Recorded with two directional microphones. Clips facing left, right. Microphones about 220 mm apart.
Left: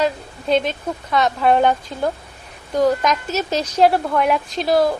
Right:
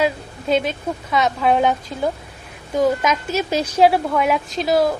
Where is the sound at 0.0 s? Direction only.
5° right (ahead or behind).